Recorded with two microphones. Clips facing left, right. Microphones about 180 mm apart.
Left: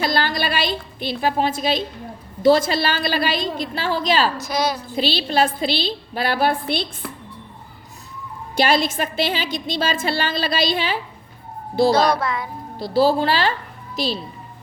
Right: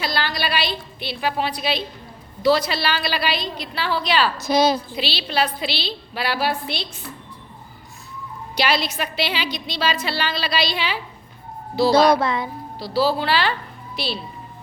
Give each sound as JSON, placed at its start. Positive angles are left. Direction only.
{"t": 0.0, "sound": "a woman's voice", "side_deg": 50}
{"t": 4.4, "sound": "a woman's voice", "side_deg": -25}
{"t": 4.9, "sound": "a woman's voice", "side_deg": 45}
{"t": 8.5, "sound": "a woman's voice", "side_deg": 50}
{"t": 12.1, "sound": "a woman's voice", "side_deg": -25}
{"t": 12.8, "sound": "a woman's voice", "side_deg": 50}